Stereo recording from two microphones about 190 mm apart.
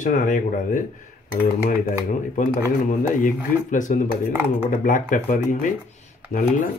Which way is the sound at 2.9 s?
45° left (ahead or behind).